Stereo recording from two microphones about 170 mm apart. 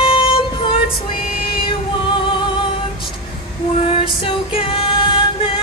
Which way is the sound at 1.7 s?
30° left (ahead or behind).